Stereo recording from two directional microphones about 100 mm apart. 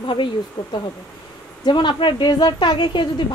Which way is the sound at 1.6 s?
50° left (ahead or behind).